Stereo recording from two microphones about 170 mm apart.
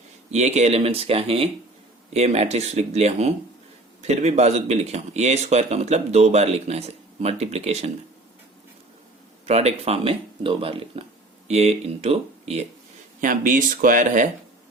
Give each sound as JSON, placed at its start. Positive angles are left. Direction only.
{"t": 0.3, "sound": "speech", "side_deg": -40}
{"t": 9.5, "sound": "speech", "side_deg": -35}
{"t": 13.2, "sound": "speech", "side_deg": -50}